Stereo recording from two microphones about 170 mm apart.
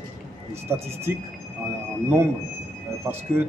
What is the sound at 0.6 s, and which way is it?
Speech, 15° right (ahead or behind).